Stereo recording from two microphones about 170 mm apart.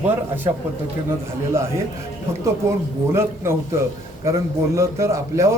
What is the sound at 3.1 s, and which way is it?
A man's voice, 15° right (ahead or behind).